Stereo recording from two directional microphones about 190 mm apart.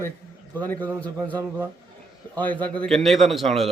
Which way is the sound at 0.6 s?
10° left (ahead or behind).